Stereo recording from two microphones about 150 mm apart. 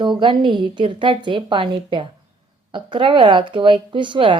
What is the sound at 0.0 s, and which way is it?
A woman's voice, 30° right (ahead or behind).